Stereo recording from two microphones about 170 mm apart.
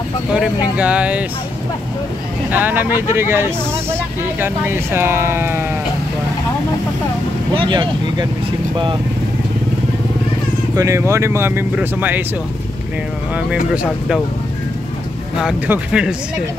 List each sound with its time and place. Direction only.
0.7 s speech: 5° right (ahead or behind)
2.5 s speech: 10° right (ahead or behind)
7.5 s speech: 30° right (ahead or behind)
10.8 s speech: 15° right (ahead or behind)
15.4 s speech: 5° right (ahead or behind)